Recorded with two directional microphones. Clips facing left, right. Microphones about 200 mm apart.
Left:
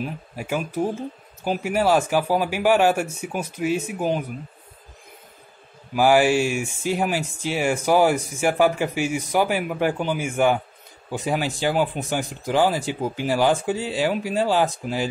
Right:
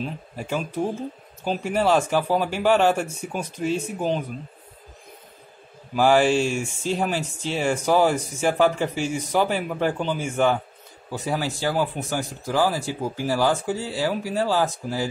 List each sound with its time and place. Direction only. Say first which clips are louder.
0.0 s speech: left 1 dB; 10° left (ahead or behind)
5.9 s speech: left 1 dB; 10° left (ahead or behind)